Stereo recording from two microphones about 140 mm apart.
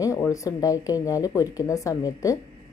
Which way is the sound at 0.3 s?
25° left (ahead or behind).